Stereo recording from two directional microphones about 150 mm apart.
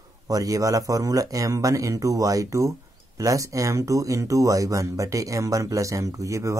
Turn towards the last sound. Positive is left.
turn(degrees=-20)  # may be behind; listen again after turning